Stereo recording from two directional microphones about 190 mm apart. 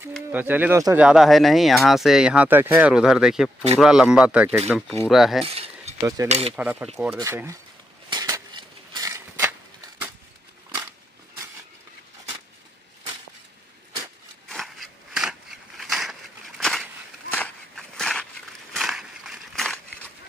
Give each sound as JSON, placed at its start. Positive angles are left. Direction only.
{"t": 0.3, "sound": "speech", "side_deg": -10}
{"t": 1.0, "sound": "speech", "side_deg": 0}
{"t": 5.4, "sound": "a sound", "side_deg": -30}
{"t": 5.9, "sound": "speech", "side_deg": -15}
{"t": 6.2, "sound": "speech", "side_deg": -35}
{"t": 6.5, "sound": "speech", "side_deg": -5}
{"t": 8.1, "sound": "a sound", "side_deg": -20}
{"t": 14.5, "sound": "a sound", "side_deg": 0}
{"t": 18.8, "sound": "crushing", "side_deg": 0}